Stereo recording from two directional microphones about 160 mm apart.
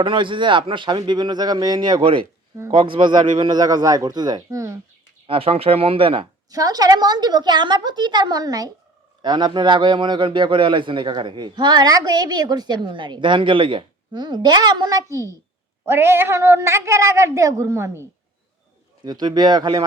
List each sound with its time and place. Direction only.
0.0 s a man's voice: 30° right (ahead or behind)
5.2 s speech: 35° right (ahead or behind)
6.5 s a man's voice: 25° right (ahead or behind)
19.0 s a man's voice: 25° right (ahead or behind)